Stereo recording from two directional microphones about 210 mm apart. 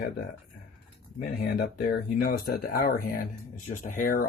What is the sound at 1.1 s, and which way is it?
Speech, 45° left (ahead or behind).